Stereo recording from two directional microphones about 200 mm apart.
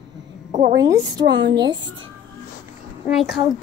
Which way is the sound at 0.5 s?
40° right (ahead or behind).